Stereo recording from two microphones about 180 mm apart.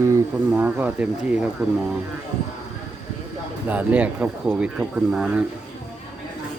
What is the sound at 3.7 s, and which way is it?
Speech, 10° right (ahead or behind).